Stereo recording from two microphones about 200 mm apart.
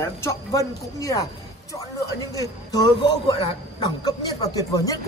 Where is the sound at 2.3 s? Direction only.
20° left (ahead or behind).